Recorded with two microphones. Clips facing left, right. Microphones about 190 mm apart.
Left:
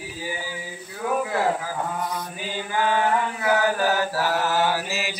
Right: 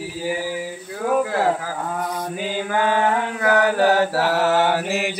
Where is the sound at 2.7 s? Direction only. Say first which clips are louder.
Right 2 dB; 65° right (ahead or behind).